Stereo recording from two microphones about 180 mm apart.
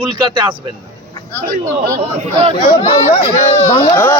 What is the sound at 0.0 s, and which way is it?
Speech, 25° right (ahead or behind).